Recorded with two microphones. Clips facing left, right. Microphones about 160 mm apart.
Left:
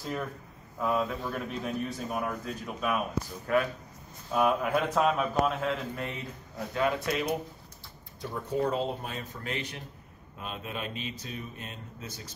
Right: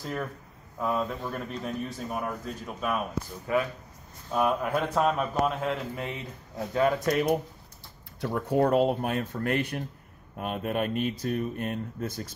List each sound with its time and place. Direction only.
0.0 s a man's voice: centre (ahead or behind)
6.7 s speech: 40° right (ahead or behind)
8.2 s speech: 60° right (ahead or behind)